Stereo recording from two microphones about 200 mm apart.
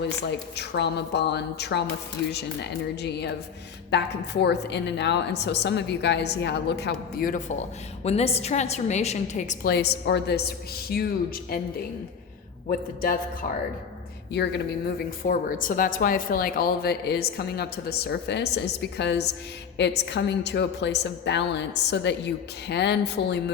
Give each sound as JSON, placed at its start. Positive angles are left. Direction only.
{"t": 0.5, "sound": "a woman's voice", "side_deg": 55}
{"t": 8.0, "sound": "a woman's voice", "side_deg": 30}
{"t": 9.7, "sound": "a woman's voice", "side_deg": 55}
{"t": 12.6, "sound": "speech", "side_deg": 45}
{"t": 14.3, "sound": "a woman's voice", "side_deg": 60}